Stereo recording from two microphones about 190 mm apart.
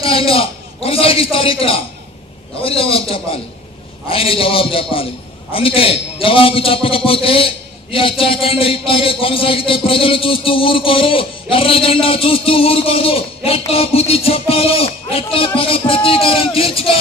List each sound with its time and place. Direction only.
0.0 s a man's voice: 30° left (ahead or behind)